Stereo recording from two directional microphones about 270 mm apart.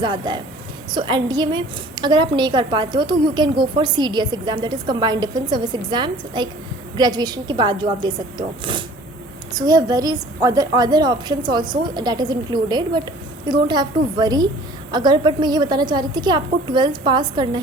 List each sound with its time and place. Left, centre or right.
0.0 s a woman's voice: centre